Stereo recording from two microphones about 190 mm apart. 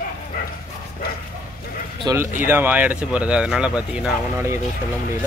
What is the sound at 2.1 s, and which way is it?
Speech, 20° right (ahead or behind).